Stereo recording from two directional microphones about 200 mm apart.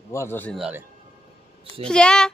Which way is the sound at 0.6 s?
10° right (ahead or behind).